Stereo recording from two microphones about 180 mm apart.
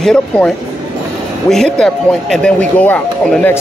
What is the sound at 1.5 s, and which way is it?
Speech, 5° left (ahead or behind).